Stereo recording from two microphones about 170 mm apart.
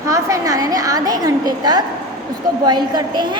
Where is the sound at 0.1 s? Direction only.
20° right (ahead or behind).